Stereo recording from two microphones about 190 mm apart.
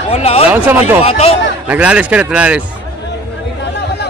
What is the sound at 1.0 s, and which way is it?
Speech, 30° left (ahead or behind).